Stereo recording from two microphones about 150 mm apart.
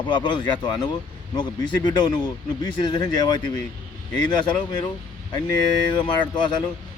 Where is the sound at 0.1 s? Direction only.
30° left (ahead or behind).